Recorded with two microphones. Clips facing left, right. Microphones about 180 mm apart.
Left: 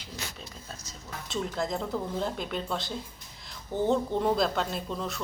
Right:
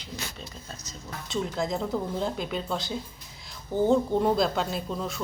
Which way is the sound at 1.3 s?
Centre (ahead or behind).